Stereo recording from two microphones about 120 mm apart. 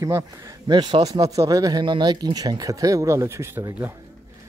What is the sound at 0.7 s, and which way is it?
Speech, 35° right (ahead or behind).